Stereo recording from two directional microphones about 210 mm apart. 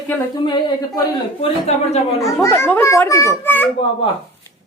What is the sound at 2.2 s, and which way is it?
Speech, 15° left (ahead or behind).